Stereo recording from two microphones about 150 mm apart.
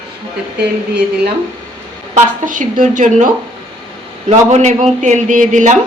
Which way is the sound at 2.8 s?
55° right (ahead or behind).